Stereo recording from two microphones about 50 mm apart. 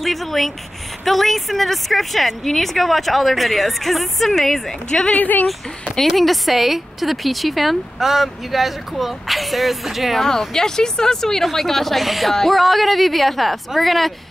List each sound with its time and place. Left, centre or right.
0.0 s speech: centre
5.1 s speech: left
5.5 s speech: centre
10.2 s speech: centre